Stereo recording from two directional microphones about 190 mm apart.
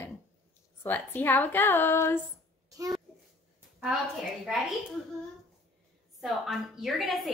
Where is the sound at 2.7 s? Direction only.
20° right (ahead or behind).